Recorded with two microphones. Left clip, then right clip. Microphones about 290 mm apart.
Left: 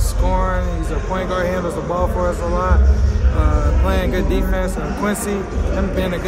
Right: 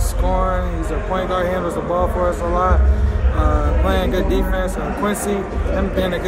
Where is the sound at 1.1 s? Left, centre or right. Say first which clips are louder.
Right 1 dB; centre.